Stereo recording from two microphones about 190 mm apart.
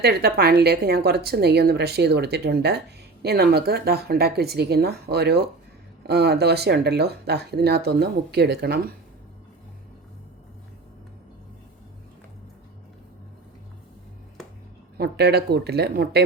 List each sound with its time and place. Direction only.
0.0 s speech: 55° right (ahead or behind)
14.9 s speech: 60° right (ahead or behind)